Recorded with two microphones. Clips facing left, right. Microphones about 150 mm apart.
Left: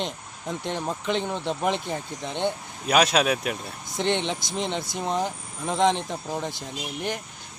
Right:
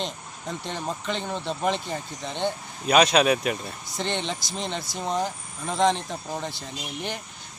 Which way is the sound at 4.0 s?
15° left (ahead or behind).